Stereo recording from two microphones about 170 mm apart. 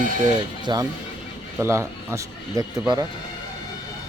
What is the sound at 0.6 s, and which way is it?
Speech, 25° right (ahead or behind).